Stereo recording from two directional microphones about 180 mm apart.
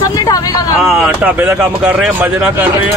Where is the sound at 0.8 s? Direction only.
5° right (ahead or behind).